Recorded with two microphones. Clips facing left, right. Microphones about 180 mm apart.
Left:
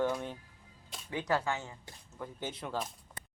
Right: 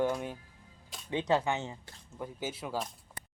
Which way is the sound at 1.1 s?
20° right (ahead or behind).